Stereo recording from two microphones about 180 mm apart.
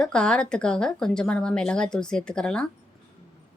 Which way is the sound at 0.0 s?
5° left (ahead or behind).